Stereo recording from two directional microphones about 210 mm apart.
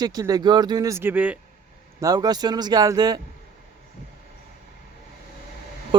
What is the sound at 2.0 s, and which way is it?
Speech, 20° right (ahead or behind).